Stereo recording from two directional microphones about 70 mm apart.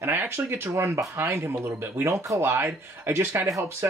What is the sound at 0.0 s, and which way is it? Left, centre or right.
Speech, right.